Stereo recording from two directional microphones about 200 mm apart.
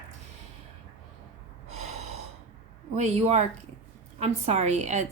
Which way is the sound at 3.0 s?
35° right (ahead or behind).